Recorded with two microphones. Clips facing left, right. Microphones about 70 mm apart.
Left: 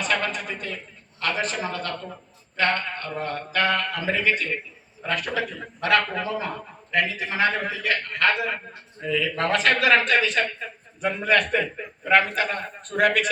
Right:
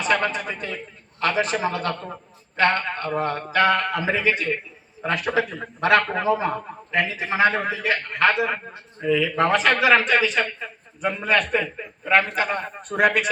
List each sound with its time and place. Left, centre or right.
0.0 s a man's voice: centre
1.5 s a man's voice: right
4.1 s a man's voice: centre
9.0 s a man's voice: centre